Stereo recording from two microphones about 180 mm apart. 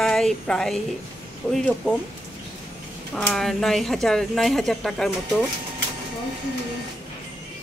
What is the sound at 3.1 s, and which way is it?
Speech, 5° left (ahead or behind).